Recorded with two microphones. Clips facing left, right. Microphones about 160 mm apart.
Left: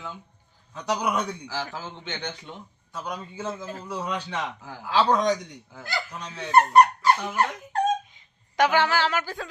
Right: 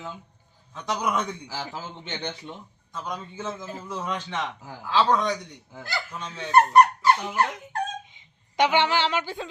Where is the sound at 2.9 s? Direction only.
10° left (ahead or behind).